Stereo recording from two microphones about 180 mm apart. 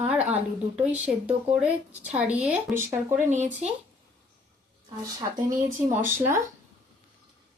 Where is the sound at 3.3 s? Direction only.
40° right (ahead or behind).